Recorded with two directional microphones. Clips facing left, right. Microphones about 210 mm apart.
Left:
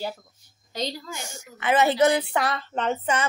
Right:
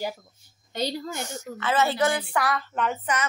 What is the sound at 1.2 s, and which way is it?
A woman's voice, 10° left (ahead or behind).